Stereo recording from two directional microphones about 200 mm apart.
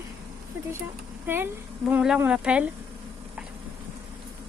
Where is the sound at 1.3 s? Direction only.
10° right (ahead or behind).